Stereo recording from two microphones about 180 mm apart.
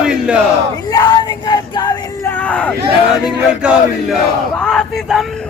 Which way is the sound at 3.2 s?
5° right (ahead or behind).